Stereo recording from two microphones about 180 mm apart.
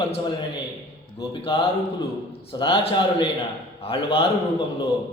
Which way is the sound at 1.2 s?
30° left (ahead or behind).